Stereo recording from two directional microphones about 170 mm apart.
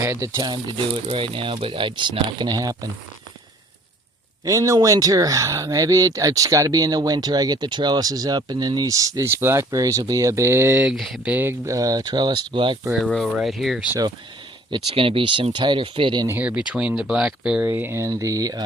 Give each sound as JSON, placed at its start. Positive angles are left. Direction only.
{"t": 0.0, "sound": "speech", "side_deg": -20}
{"t": 4.4, "sound": "speech", "side_deg": -20}
{"t": 12.9, "sound": "speech", "side_deg": 0}
{"t": 14.9, "sound": "speech", "side_deg": -30}
{"t": 16.2, "sound": "speech", "side_deg": -10}